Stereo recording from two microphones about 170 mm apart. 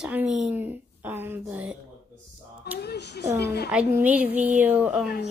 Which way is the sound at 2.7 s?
75° left (ahead or behind).